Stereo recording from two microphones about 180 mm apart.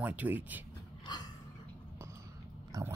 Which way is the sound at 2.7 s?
20° right (ahead or behind).